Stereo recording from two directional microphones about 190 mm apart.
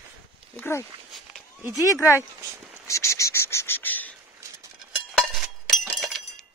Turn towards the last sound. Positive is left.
turn(degrees=0)  # may be behind; listen again after turning